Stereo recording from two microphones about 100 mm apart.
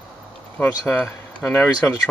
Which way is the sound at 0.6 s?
20° left (ahead or behind).